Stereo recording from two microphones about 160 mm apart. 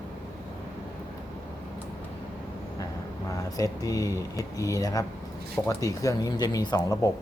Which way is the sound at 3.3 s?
20° left (ahead or behind).